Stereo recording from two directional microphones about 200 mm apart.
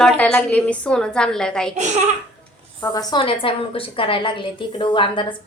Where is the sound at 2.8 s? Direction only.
20° left (ahead or behind).